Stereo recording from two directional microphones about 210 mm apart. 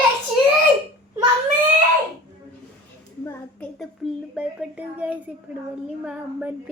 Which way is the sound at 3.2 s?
5° left (ahead or behind).